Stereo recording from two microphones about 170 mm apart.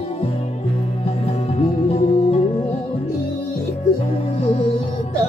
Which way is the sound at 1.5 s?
35° left (ahead or behind).